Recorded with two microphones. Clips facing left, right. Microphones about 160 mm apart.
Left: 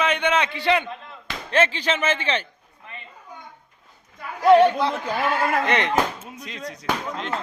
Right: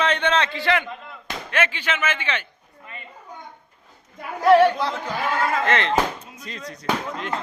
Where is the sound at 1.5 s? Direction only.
35° left (ahead or behind).